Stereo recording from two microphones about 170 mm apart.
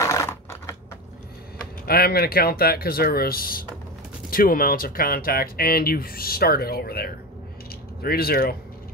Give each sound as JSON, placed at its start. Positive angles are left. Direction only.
{"t": 0.0, "sound": "typing", "side_deg": 15}
{"t": 1.9, "sound": "speech", "side_deg": 65}